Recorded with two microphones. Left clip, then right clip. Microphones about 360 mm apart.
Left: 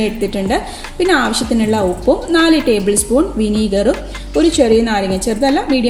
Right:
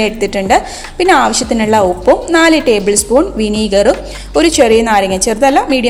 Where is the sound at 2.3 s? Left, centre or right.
Centre.